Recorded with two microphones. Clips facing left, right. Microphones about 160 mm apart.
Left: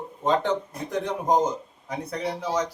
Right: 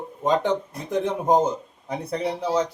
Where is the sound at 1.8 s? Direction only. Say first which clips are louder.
Right 3 dB; 30° right (ahead or behind).